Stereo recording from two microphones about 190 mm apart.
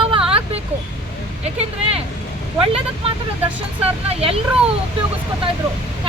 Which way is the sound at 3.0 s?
30° right (ahead or behind).